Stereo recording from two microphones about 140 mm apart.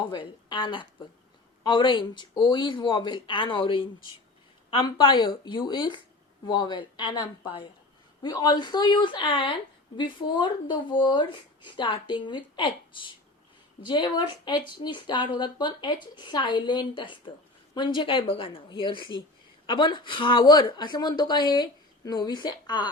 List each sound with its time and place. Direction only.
0.1 s speech: 35° left (ahead or behind)